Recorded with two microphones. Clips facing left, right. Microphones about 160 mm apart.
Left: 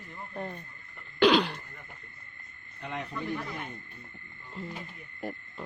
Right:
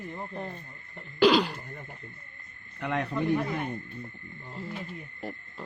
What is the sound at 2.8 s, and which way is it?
Speech, 70° right (ahead or behind).